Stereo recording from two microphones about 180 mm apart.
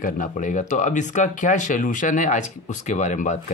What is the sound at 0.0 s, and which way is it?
Speech, 45° left (ahead or behind).